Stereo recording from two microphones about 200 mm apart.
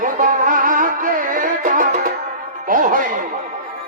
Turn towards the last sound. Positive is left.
turn(degrees=-40)  # may be behind; listen again after turning